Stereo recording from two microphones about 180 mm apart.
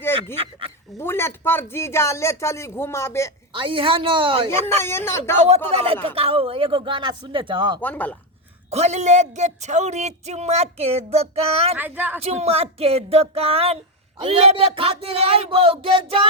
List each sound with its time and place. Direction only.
0.0 s a sound: 10° left (ahead or behind)
0.9 s speech: 15° left (ahead or behind)
3.5 s speech: 30° right (ahead or behind)
4.8 s speech: 15° left (ahead or behind)
5.4 s speech: 35° right (ahead or behind)
7.8 s speech: 10° left (ahead or behind)
8.7 s speech: 40° right (ahead or behind)
11.8 s a woman's voice: 10° right (ahead or behind)
12.2 s speech: 35° right (ahead or behind)